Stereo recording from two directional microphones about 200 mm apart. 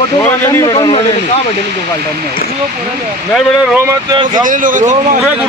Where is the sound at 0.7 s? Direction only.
25° left (ahead or behind).